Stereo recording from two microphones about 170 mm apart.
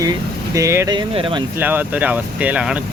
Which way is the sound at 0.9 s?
30° right (ahead or behind).